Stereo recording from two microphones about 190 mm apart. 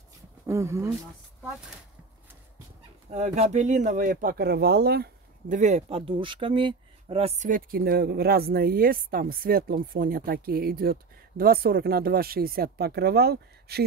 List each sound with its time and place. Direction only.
0.5 s speech: 15° right (ahead or behind)
3.1 s speech: 40° right (ahead or behind); by 5.6 s 55° right (ahead or behind)
5.6 s speech: 40° right (ahead or behind); by 13.8 s 55° right (ahead or behind)